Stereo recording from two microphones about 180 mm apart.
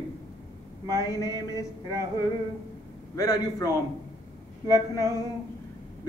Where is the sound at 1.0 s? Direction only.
15° left (ahead or behind).